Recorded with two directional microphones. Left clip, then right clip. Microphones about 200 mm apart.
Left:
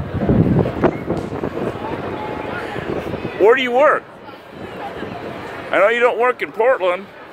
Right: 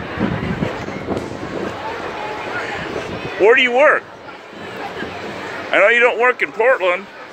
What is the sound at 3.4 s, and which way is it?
Speech, 15° left (ahead or behind).